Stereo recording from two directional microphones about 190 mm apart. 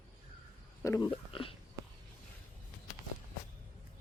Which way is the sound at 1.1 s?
30° left (ahead or behind).